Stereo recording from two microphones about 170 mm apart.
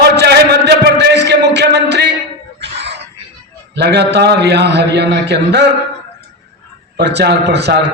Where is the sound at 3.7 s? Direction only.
75° right (ahead or behind).